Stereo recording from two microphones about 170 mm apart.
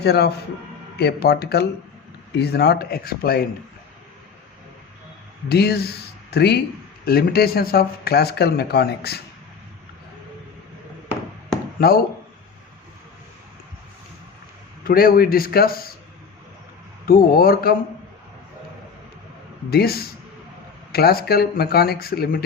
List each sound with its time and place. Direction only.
0.0 s speech: 70° left (ahead or behind)
5.5 s speech: 70° left (ahead or behind)
14.8 s speech: 60° left (ahead or behind)
17.1 s speech: 60° left (ahead or behind)
19.7 s speech: 65° left (ahead or behind)